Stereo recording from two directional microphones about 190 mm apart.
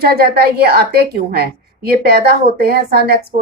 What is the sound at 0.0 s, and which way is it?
A woman's voice, 55° right (ahead or behind).